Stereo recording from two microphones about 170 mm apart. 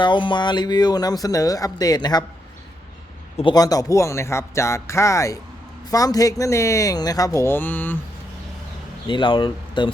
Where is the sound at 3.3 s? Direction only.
25° left (ahead or behind); by 8.0 s 10° left (ahead or behind).